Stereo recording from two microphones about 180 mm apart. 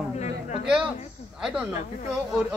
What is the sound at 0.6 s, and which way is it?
Speech, 5° right (ahead or behind).